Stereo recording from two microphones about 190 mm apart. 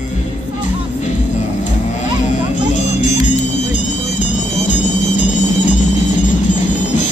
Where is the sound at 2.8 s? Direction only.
40° left (ahead or behind).